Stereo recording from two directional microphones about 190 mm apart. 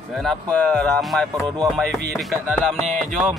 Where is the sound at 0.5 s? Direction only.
5° left (ahead or behind).